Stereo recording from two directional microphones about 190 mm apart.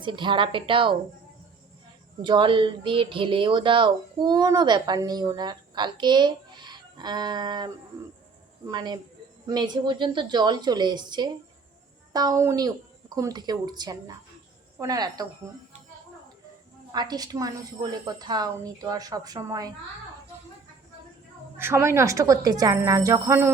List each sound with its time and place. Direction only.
0.0 s speech: 25° right (ahead or behind)
2.2 s speech: 25° right (ahead or behind)
16.9 s speech: 20° right (ahead or behind)
21.6 s speech: 15° right (ahead or behind)